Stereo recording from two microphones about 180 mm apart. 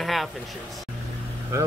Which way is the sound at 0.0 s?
Centre (ahead or behind).